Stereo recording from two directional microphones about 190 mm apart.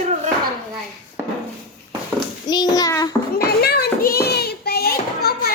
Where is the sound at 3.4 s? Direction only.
55° left (ahead or behind).